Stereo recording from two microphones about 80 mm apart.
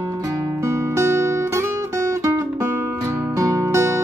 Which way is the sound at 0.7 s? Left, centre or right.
Right.